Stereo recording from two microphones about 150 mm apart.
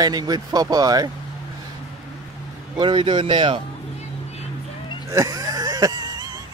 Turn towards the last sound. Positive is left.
turn(degrees=-25)  # may be behind; listen again after turning